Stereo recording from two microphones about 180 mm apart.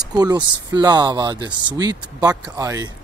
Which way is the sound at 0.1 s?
20° right (ahead or behind).